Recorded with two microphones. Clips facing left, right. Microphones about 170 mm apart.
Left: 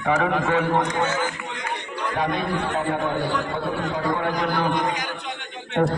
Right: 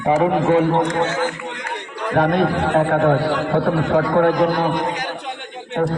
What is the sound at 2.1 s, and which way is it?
A man's voice, 60° right (ahead or behind).